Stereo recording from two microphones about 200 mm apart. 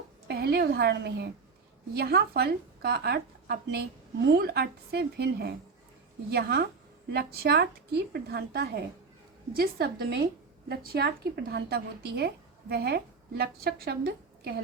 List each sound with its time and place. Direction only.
0.3 s a woman's voice: 55° right (ahead or behind)